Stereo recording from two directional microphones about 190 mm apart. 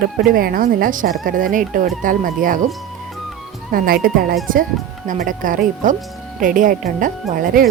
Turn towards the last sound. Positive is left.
turn(degrees=-50)  # may be behind; listen again after turning